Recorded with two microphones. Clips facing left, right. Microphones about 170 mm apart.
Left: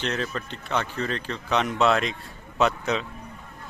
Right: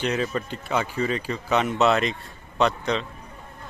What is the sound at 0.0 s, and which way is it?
A man's voice, 10° right (ahead or behind).